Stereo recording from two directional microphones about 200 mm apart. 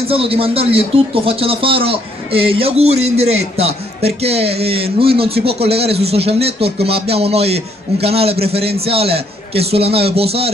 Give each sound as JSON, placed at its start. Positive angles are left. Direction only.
{"t": 0.1, "sound": "speech", "side_deg": -30}